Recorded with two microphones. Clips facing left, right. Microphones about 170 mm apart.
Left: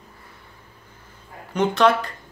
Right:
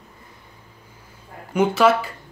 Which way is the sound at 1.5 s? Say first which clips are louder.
Right 1 dB; 5° right (ahead or behind).